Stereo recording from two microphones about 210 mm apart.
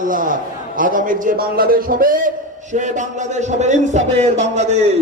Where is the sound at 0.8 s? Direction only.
40° right (ahead or behind).